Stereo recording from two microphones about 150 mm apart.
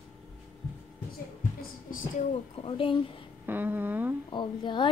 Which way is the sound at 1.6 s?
65° left (ahead or behind).